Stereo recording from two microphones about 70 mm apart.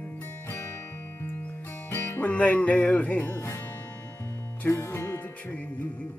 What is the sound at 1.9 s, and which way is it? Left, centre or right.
Music, left.